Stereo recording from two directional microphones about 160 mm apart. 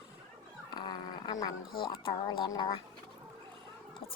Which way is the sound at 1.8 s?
25° left (ahead or behind).